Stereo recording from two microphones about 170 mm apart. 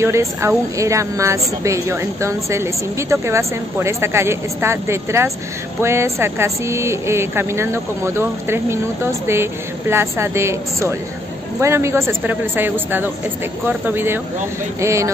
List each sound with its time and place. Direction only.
0.0 s a woman's voice: 15° right (ahead or behind)